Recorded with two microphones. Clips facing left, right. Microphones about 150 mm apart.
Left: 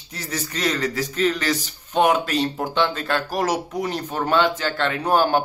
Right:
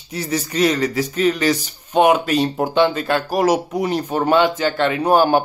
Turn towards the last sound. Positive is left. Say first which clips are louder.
# right 4 dB
turn(degrees=-10)  # may be behind; listen again after turning